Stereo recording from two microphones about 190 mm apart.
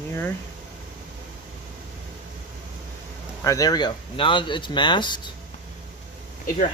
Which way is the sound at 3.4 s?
20° left (ahead or behind).